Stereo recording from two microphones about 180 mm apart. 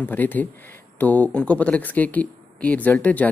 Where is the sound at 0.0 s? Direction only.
10° left (ahead or behind).